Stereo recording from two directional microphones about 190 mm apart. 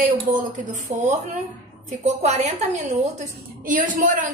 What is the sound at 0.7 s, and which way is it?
A woman's voice, 40° right (ahead or behind).